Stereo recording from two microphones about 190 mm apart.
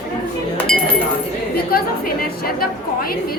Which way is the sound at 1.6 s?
50° left (ahead or behind).